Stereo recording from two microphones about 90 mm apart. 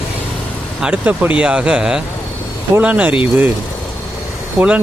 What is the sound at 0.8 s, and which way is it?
Speech, 15° right (ahead or behind).